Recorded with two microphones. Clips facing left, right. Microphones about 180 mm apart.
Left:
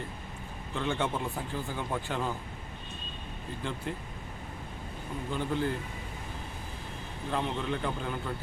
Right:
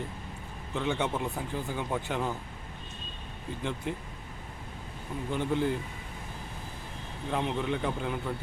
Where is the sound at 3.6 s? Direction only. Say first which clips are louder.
Right 2 dB; 15° right (ahead or behind).